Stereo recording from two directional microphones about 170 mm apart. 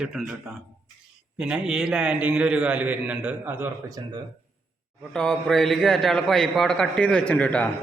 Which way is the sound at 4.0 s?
25° right (ahead or behind).